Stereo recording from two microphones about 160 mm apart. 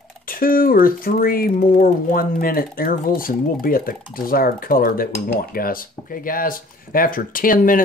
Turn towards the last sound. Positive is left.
turn(degrees=60)  # may be behind; listen again after turning